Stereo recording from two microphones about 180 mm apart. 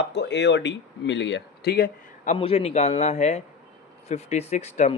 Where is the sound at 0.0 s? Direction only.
75° left (ahead or behind).